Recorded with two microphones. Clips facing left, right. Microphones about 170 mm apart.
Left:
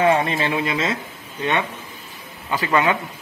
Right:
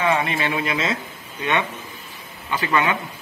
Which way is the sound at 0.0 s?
35° left (ahead or behind).